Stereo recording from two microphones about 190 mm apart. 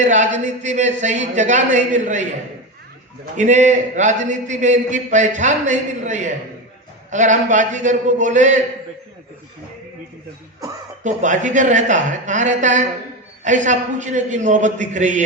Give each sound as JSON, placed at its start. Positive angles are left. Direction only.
{"t": 0.0, "sound": "a man's voice", "side_deg": -40}
{"t": 3.3, "sound": "a man's voice", "side_deg": -40}
{"t": 11.0, "sound": "a man's voice", "side_deg": -40}